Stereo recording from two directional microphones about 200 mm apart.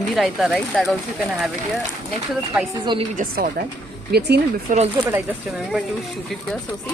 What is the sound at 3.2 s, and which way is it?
Speech, 45° right (ahead or behind).